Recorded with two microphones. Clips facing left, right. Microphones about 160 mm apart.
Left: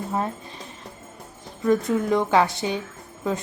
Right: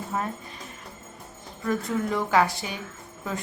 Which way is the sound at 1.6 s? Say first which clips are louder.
Left 6 dB; 20° left (ahead or behind).